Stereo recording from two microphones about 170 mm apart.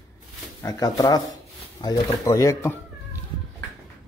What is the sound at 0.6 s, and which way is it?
Speech, 20° left (ahead or behind).